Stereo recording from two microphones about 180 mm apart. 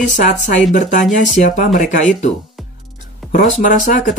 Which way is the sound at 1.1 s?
45° left (ahead or behind).